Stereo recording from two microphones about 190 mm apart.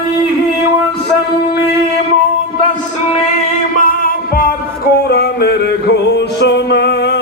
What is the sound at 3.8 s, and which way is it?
Music, 50° left (ahead or behind).